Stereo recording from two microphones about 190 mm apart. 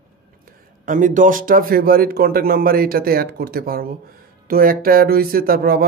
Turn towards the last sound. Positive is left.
turn(degrees=-50)  # may be behind; listen again after turning